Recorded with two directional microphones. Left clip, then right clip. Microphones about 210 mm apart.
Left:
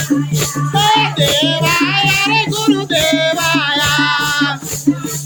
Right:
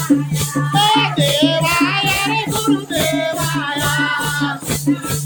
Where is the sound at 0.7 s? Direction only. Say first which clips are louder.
Left 2 dB; 5° left (ahead or behind).